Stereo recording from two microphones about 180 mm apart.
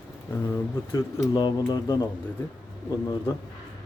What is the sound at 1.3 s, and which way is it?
Speech, 25° left (ahead or behind).